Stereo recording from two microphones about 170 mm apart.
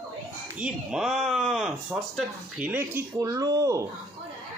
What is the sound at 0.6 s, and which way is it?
Speech, 5° right (ahead or behind).